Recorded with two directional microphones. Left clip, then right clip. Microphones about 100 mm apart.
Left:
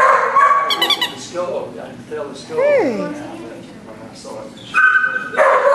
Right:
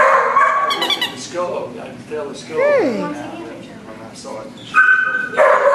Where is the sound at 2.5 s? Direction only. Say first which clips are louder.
Even; centre (ahead or behind).